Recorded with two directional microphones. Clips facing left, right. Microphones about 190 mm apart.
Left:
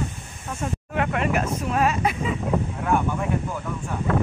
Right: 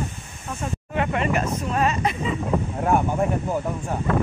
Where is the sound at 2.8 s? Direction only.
40° right (ahead or behind).